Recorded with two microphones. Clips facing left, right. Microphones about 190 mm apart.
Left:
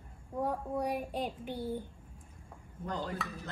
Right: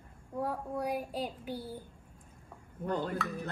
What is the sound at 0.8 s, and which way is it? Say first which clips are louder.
A child's voice: right 1 dB; 5° right (ahead or behind).